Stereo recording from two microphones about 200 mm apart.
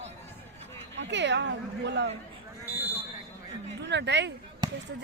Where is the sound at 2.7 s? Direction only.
10° right (ahead or behind).